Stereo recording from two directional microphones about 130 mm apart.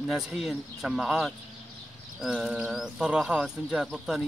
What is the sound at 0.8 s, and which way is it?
Speech, centre (ahead or behind).